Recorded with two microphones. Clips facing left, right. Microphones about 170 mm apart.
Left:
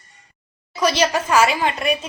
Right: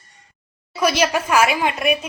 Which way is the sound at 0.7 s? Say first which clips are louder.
Even; 10° right (ahead or behind).